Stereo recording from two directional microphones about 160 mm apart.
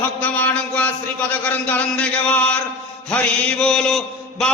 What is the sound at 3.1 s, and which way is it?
Chant, 5° left (ahead or behind).